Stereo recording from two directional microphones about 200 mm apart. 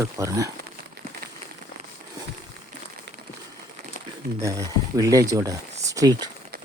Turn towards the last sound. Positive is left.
turn(degrees=-20)  # may be behind; listen again after turning